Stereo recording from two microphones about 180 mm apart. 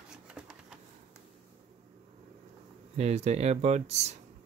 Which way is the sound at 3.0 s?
35° right (ahead or behind).